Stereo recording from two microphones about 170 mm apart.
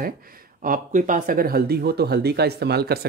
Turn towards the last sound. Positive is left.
turn(degrees=-70)  # may be behind; listen again after turning